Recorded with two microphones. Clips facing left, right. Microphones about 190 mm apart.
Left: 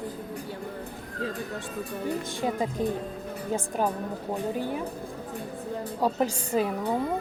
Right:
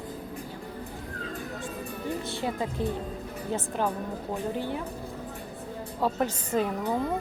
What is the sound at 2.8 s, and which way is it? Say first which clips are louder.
Speech: left 2 dB; 15° left (ahead or behind).